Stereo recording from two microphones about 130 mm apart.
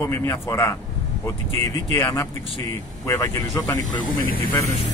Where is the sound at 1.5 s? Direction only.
50° right (ahead or behind).